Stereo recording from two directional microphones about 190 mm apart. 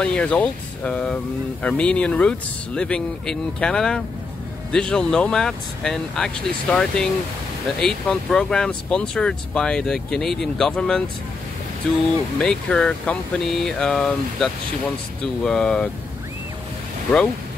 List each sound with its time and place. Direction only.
0.0 s speech: 5° left (ahead or behind)
12.4 s speech: 5° left (ahead or behind)